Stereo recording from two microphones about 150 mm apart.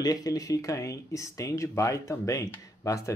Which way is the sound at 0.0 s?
25° left (ahead or behind).